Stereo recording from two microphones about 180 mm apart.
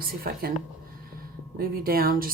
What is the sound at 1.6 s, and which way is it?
Speech, 55° right (ahead or behind).